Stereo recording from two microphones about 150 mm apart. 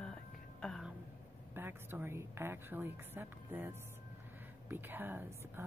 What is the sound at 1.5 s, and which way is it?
A woman's voice, 15° right (ahead or behind).